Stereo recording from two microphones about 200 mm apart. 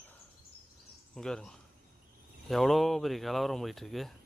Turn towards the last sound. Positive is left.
turn(degrees=0)  # may be behind; listen again after turning